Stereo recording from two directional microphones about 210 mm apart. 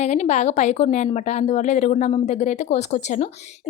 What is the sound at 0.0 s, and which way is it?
A woman's voice, 30° left (ahead or behind).